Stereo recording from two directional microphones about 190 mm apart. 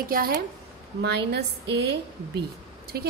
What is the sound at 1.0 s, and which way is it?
A woman's voice, 60° right (ahead or behind).